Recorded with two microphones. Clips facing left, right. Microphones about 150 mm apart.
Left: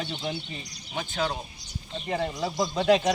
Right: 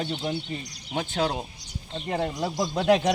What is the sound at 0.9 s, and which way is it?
Speech, 60° right (ahead or behind).